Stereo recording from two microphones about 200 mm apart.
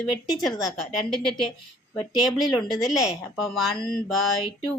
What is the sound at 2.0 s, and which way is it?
A woman's voice, centre (ahead or behind).